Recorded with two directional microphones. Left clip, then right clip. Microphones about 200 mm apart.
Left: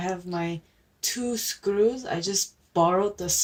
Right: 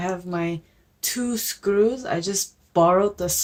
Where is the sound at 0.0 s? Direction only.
30° right (ahead or behind).